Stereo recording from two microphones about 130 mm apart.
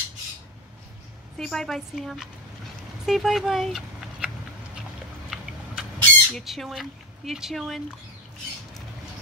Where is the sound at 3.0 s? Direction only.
Centre (ahead or behind).